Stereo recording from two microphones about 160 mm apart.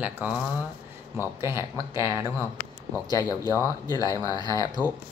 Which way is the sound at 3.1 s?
25° left (ahead or behind).